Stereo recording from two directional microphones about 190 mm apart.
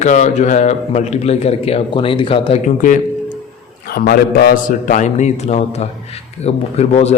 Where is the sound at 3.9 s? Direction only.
55° left (ahead or behind).